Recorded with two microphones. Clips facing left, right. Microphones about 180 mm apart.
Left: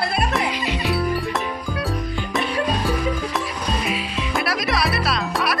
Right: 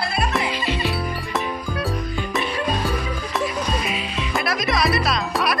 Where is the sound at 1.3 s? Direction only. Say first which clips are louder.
Even; centre (ahead or behind).